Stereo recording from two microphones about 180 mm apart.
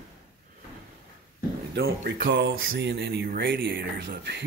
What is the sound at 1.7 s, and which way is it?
Speech, 60° right (ahead or behind).